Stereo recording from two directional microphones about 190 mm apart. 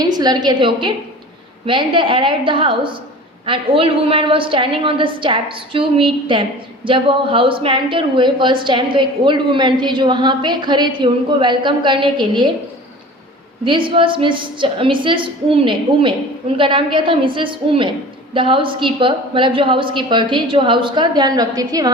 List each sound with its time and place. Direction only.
0.0 s a woman's voice: 20° right (ahead or behind)
13.7 s a woman's voice: 25° right (ahead or behind)